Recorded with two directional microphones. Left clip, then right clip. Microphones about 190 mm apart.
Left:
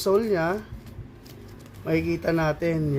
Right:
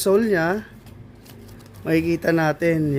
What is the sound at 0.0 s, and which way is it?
Speech, 45° right (ahead or behind).